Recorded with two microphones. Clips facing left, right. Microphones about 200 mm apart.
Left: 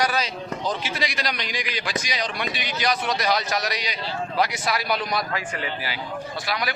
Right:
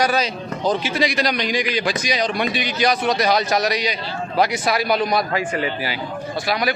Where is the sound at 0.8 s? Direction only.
20° right (ahead or behind).